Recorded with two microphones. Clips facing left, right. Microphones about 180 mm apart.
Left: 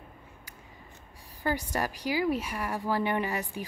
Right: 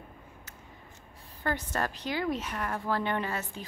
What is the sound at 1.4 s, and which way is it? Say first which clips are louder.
A woman's voice: left 1 dB; 10° left (ahead or behind).